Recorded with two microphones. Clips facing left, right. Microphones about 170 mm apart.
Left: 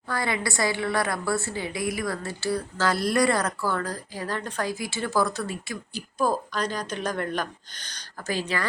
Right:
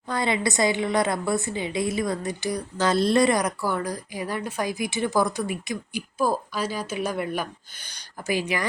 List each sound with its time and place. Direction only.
0.1 s a woman's voice: 20° right (ahead or behind)